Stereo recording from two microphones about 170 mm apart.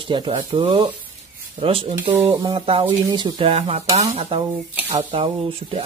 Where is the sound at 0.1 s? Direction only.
25° right (ahead or behind).